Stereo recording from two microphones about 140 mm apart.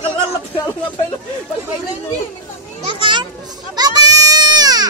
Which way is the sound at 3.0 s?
35° right (ahead or behind).